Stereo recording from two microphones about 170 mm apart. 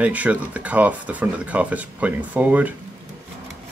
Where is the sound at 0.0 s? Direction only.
10° right (ahead or behind).